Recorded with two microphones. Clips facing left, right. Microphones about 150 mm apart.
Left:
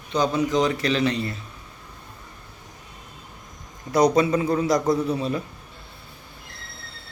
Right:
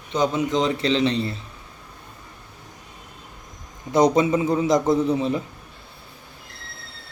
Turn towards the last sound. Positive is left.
turn(degrees=-20)  # may be behind; listen again after turning